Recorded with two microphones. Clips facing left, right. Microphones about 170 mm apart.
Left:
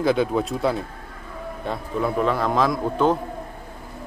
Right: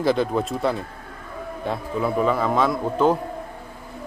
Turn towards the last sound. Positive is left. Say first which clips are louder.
# right 1 dB
turn(degrees=-5)  # may be behind; listen again after turning